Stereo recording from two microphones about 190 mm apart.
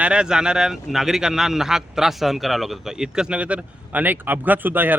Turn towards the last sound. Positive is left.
turn(degrees=-10)  # may be behind; listen again after turning